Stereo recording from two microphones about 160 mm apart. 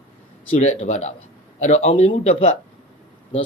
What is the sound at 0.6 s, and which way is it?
A man's voice, 45° left (ahead or behind).